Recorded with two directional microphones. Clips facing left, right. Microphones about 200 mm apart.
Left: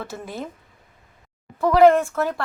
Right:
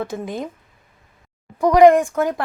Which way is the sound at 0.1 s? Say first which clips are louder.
Right 5 dB; 15° right (ahead or behind).